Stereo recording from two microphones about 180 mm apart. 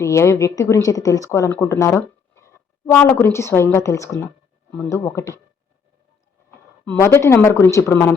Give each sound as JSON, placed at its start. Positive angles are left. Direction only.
{"t": 0.0, "sound": "speech", "side_deg": 15}
{"t": 6.8, "sound": "speech", "side_deg": 10}